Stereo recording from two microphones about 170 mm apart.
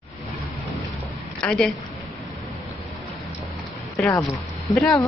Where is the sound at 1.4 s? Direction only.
5° left (ahead or behind).